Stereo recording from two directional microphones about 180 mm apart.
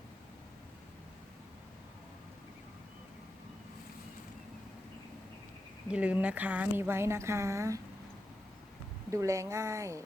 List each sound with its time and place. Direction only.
5.9 s speech: 5° right (ahead or behind)
9.0 s speech: 15° right (ahead or behind)